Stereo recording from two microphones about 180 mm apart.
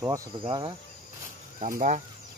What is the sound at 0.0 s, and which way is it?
Speech, 20° right (ahead or behind).